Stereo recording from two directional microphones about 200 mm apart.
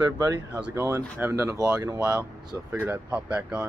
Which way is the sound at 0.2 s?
15° right (ahead or behind).